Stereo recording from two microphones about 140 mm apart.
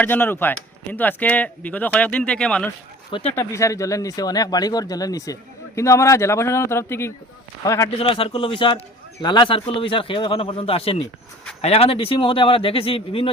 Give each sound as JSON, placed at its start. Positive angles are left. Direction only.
{"t": 0.0, "sound": "speech", "side_deg": 15}
{"t": 3.2, "sound": "speech", "side_deg": 20}
{"t": 7.9, "sound": "speech", "side_deg": 40}